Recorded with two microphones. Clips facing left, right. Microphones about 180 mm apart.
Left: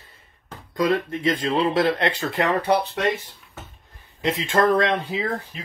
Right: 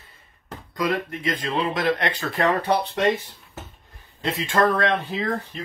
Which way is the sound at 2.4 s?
10° left (ahead or behind).